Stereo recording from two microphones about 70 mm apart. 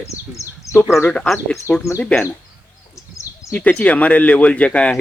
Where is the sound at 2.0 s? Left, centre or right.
Centre.